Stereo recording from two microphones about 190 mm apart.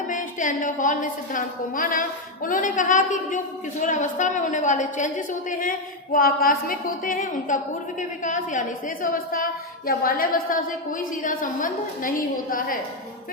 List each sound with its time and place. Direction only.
0.1 s a woman's voice: 40° left (ahead or behind)